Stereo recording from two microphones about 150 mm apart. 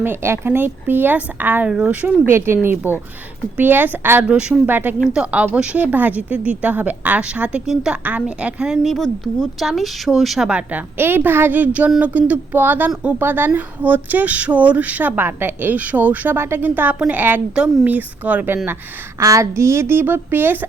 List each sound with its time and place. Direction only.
0.0 s speech: 15° right (ahead or behind)